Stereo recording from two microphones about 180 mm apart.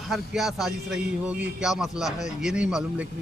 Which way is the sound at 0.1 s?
Centre (ahead or behind).